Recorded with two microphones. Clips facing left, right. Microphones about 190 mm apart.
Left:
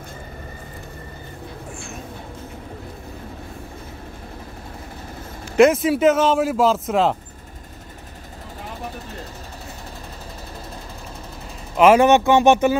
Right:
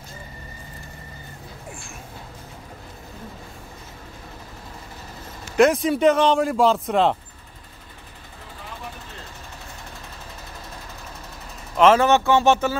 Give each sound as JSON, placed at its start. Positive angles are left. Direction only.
{"t": 5.6, "sound": "speech", "side_deg": 0}
{"t": 11.7, "sound": "speech", "side_deg": 10}